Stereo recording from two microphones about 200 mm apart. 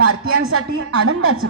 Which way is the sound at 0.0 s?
90° right.